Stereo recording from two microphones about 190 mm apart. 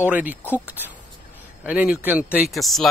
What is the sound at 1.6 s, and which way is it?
Speech, 5° right (ahead or behind).